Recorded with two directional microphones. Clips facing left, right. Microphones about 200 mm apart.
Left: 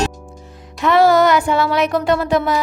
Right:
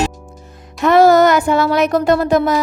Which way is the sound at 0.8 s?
45° right (ahead or behind).